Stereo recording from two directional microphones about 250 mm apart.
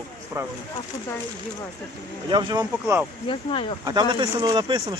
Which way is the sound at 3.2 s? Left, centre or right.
Left.